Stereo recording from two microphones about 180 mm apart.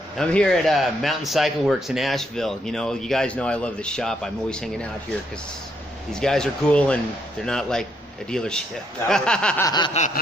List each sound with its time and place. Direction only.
0.2 s a man's voice: 5° left (ahead or behind)
6.1 s a man's voice: 5° left (ahead or behind)
9.7 s a sound: 25° left (ahead or behind)